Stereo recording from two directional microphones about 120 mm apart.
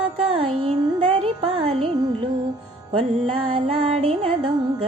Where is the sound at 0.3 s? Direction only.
50° right (ahead or behind).